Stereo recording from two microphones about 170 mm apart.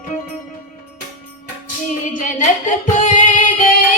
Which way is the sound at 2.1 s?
50° left (ahead or behind).